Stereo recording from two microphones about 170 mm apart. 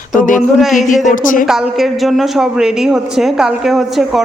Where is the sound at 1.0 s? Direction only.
50° left (ahead or behind).